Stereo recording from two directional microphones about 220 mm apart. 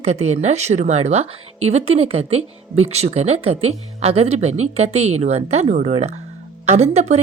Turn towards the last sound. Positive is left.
turn(degrees=-30)  # may be behind; listen again after turning